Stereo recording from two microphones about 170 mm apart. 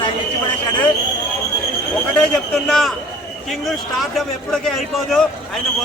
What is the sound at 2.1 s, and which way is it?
A man's voice, 5° left (ahead or behind).